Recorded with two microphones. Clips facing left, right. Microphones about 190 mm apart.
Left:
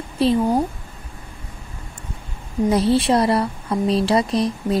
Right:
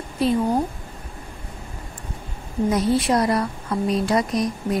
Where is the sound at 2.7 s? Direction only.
30° left (ahead or behind).